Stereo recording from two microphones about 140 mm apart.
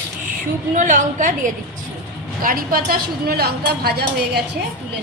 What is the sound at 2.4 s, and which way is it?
A woman's voice, 90° right.